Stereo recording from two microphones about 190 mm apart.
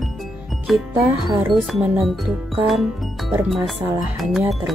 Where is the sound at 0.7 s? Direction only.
Centre (ahead or behind).